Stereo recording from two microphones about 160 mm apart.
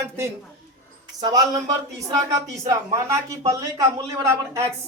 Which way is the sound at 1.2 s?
25° right (ahead or behind).